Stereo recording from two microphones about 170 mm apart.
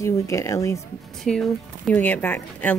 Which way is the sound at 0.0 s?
15° left (ahead or behind).